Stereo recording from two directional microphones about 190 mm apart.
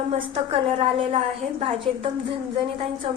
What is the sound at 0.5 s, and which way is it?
A woman's voice, 30° right (ahead or behind).